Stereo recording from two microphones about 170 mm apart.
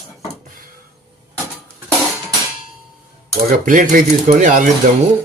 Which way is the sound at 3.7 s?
50° right (ahead or behind).